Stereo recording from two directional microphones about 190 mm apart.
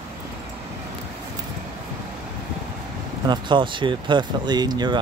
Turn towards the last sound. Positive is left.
turn(degrees=-20)  # may be behind; listen again after turning